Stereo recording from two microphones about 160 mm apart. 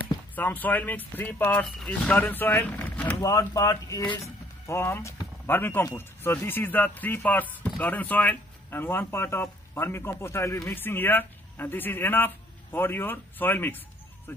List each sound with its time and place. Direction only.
0.4 s speech: 10° left (ahead or behind)
3.2 s speech: 20° left (ahead or behind)